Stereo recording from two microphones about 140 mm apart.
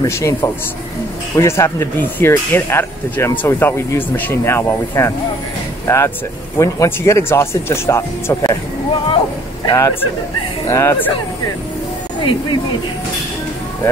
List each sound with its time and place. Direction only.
0.0 s speech: 20° left (ahead or behind)
9.7 s speech: 25° left (ahead or behind)
12.2 s speech: 35° left (ahead or behind)